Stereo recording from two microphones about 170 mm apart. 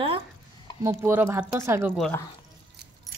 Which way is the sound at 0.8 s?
15° right (ahead or behind).